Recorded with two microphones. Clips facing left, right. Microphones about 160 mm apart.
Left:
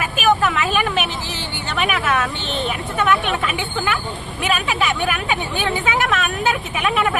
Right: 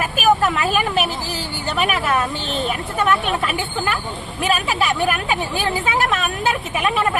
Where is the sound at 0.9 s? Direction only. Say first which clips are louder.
Right 2 dB; 35° right (ahead or behind).